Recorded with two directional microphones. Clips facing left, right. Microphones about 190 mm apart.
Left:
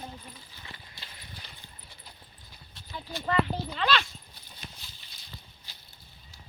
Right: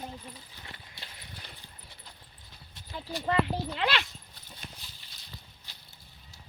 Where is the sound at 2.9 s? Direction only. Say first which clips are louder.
Right 1 dB; 30° right (ahead or behind).